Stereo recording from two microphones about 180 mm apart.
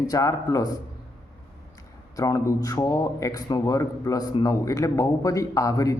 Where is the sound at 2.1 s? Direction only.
20° left (ahead or behind).